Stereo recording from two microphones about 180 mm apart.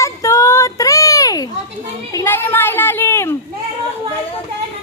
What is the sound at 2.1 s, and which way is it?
Children playing, 15° left (ahead or behind).